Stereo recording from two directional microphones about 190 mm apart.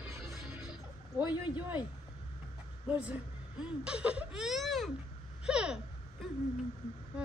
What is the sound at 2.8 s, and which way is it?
Speech, 5° right (ahead or behind).